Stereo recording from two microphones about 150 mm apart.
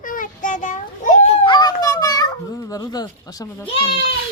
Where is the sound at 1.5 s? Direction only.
30° left (ahead or behind).